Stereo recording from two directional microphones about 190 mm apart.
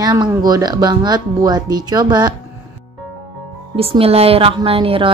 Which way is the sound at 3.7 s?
30° right (ahead or behind).